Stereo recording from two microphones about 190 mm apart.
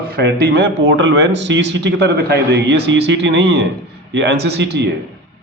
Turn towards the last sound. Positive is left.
turn(degrees=-65)  # may be behind; listen again after turning